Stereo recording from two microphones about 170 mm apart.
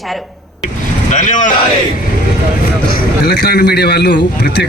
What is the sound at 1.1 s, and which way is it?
Speech, 45° left (ahead or behind).